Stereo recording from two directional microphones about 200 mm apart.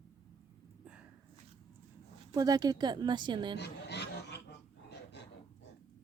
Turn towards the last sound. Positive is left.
turn(degrees=55)  # may be behind; listen again after turning